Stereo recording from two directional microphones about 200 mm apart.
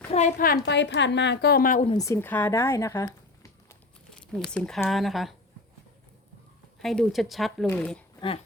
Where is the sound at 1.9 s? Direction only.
15° left (ahead or behind).